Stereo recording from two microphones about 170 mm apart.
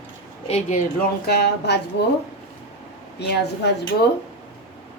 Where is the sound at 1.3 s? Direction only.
75° left (ahead or behind).